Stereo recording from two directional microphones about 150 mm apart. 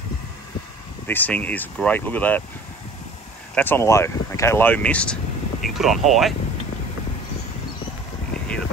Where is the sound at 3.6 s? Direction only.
15° left (ahead or behind); by 6.3 s centre (ahead or behind).